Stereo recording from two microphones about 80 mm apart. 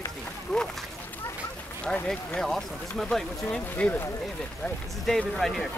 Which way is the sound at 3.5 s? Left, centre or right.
Centre.